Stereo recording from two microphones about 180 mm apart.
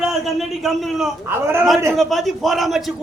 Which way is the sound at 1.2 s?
15° right (ahead or behind).